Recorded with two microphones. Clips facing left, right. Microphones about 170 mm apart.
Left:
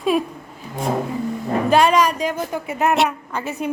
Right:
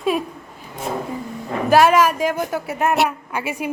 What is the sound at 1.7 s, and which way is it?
Speech, 5° right (ahead or behind).